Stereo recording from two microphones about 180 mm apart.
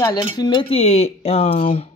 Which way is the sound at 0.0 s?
20° left (ahead or behind).